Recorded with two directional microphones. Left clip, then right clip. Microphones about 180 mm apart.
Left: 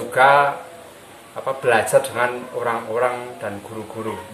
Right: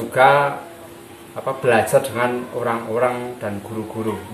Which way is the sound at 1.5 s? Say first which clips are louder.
Right 1 dB; 15° left (ahead or behind).